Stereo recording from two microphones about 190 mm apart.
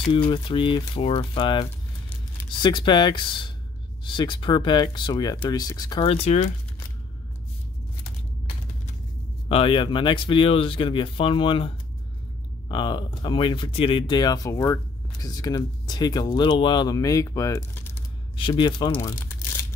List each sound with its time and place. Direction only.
0.1 s speech: 30° left (ahead or behind)
9.5 s speech: 30° left (ahead or behind)